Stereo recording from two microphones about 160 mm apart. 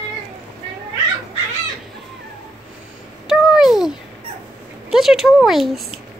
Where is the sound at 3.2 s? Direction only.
5° right (ahead or behind).